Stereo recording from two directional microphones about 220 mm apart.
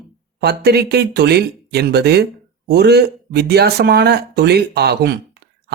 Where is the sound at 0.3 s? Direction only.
45° right (ahead or behind).